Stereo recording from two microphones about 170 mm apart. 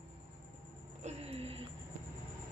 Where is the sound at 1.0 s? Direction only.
35° right (ahead or behind).